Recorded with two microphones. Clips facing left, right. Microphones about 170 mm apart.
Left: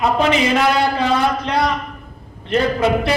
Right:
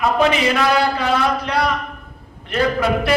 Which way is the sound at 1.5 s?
25° left (ahead or behind).